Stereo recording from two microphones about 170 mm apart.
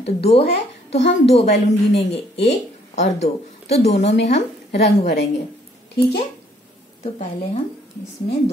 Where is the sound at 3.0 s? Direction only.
40° left (ahead or behind).